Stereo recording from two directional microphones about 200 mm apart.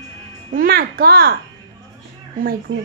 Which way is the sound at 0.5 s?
50° right (ahead or behind).